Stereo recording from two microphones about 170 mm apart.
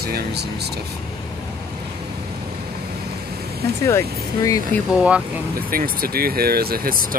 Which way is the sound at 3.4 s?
65° right (ahead or behind).